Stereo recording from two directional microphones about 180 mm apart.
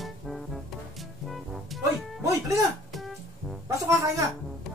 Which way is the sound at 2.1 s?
15° right (ahead or behind).